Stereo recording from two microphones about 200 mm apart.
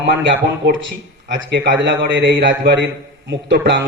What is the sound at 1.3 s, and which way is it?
A man's voice, 60° right (ahead or behind).